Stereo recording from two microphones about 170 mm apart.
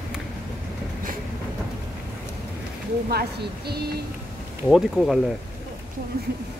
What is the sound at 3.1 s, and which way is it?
Speech, 70° right (ahead or behind).